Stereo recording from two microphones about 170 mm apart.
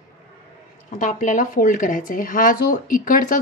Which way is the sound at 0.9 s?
50° left (ahead or behind).